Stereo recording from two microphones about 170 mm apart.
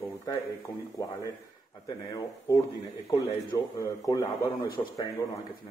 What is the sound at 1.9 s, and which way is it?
Speech, 20° left (ahead or behind).